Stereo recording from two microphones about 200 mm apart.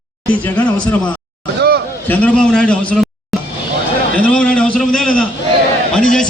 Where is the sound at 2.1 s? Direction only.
5° left (ahead or behind).